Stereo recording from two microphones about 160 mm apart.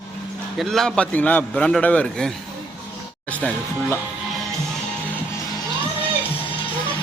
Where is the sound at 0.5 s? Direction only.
Centre (ahead or behind).